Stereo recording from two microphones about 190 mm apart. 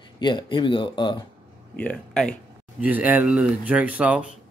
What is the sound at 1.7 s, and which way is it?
Speech, 5° left (ahead or behind).